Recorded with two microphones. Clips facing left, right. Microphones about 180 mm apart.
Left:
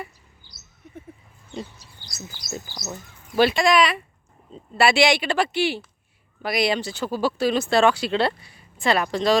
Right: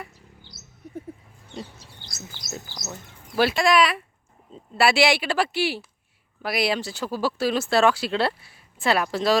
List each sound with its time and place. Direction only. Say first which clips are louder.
1.8 s bird: right 3 dB; 25° right (ahead or behind)
2.5 s speech: left 3 dB; centre (ahead or behind)